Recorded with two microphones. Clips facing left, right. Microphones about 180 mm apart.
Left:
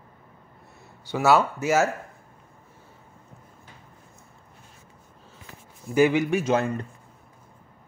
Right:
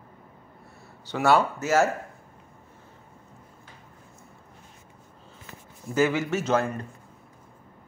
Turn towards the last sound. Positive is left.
turn(degrees=15)  # may be behind; listen again after turning